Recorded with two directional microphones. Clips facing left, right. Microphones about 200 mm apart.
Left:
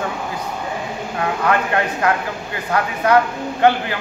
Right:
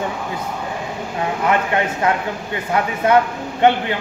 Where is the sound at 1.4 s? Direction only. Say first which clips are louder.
Right 1 dB; 20° right (ahead or behind).